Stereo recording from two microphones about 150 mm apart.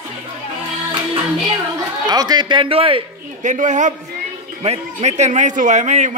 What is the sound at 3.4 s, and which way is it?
A woman's voice, 55° right (ahead or behind).